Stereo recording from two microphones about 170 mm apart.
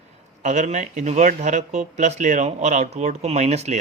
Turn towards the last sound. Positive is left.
turn(degrees=-40)  # may be behind; listen again after turning